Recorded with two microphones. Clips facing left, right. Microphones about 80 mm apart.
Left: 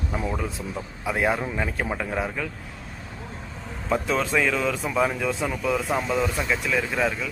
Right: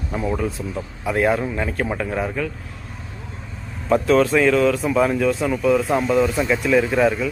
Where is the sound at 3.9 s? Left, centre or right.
Centre.